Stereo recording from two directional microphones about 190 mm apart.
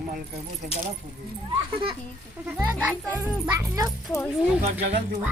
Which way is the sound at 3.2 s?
10° right (ahead or behind).